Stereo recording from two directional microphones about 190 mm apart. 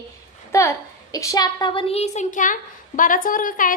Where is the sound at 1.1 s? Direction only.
15° left (ahead or behind).